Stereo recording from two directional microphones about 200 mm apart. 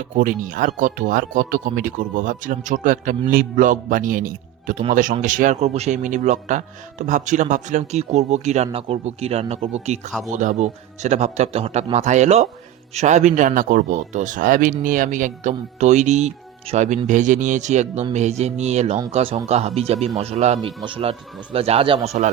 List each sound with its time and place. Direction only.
0.0 s a man's voice: 40° right (ahead or behind)
10.1 s speech: centre (ahead or behind)
10.3 s a man's voice: 40° right (ahead or behind)